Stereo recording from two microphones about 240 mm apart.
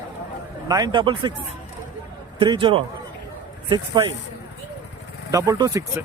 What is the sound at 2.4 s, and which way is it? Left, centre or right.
Speech, right.